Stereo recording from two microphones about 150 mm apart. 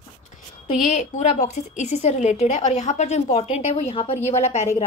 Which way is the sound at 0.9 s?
50° left (ahead or behind).